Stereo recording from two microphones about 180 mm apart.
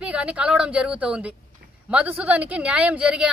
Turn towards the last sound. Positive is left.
turn(degrees=-5)  # may be behind; listen again after turning